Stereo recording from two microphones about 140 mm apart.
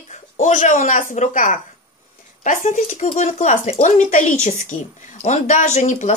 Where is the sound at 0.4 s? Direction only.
65° left (ahead or behind).